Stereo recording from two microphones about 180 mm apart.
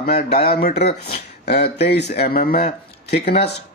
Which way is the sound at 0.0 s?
55° left (ahead or behind).